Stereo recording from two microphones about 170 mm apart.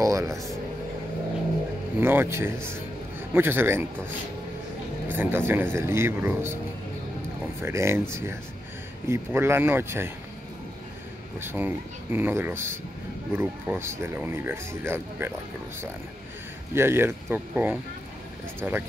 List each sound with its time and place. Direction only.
0.0 s speech: 20° right (ahead or behind)
2.0 s speech: 15° right (ahead or behind)
5.0 s speech: 10° right (ahead or behind)
7.6 s speech: 15° right (ahead or behind)
11.4 s speech: 10° right (ahead or behind)
16.7 s speech: 15° right (ahead or behind)